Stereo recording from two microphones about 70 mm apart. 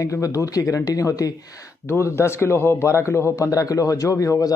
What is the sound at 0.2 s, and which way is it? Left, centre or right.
A man's voice, left.